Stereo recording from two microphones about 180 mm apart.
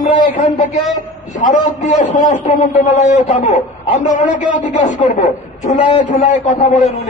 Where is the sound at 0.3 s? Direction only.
40° left (ahead or behind).